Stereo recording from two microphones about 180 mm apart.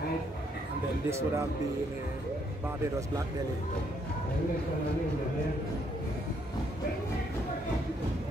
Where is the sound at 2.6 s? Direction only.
15° right (ahead or behind).